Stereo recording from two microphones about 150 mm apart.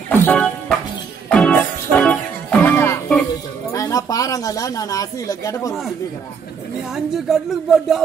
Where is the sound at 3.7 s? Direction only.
20° left (ahead or behind).